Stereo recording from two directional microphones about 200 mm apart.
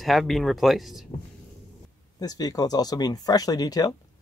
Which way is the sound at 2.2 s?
20° left (ahead or behind).